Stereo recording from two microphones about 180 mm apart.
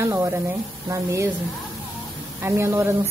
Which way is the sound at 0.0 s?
15° right (ahead or behind).